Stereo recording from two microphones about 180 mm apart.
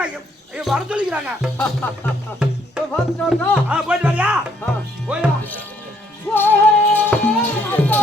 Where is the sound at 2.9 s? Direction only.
5° left (ahead or behind).